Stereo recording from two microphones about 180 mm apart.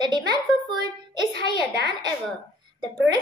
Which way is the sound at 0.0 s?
25° right (ahead or behind).